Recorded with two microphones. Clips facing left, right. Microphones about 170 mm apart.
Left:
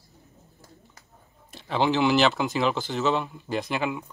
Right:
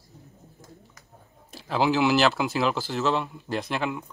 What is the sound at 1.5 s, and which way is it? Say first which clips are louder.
Speech: even; 5° right (ahead or behind).